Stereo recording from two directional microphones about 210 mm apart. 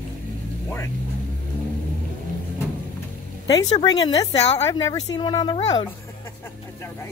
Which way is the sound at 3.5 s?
20° left (ahead or behind).